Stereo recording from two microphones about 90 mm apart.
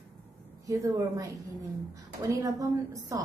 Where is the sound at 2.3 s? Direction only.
40° right (ahead or behind).